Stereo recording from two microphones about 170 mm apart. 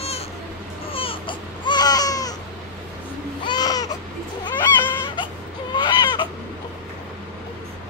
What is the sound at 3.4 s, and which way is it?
Baby cry, 25° left (ahead or behind).